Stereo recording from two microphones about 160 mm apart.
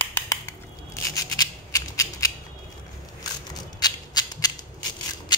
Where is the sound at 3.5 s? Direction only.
25° left (ahead or behind).